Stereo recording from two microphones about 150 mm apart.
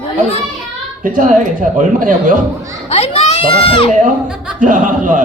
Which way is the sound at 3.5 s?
35° left (ahead or behind).